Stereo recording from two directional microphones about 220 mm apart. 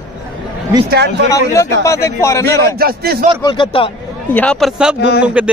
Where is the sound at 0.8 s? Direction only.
50° right (ahead or behind).